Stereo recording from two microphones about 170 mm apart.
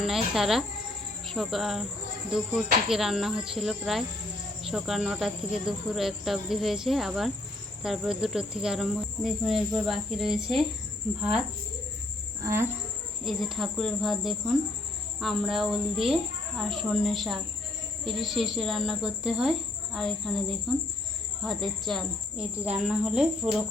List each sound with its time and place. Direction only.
0.0 s cricket: centre (ahead or behind)
12.4 s cricket: 15° right (ahead or behind)
13.2 s cricket: centre (ahead or behind)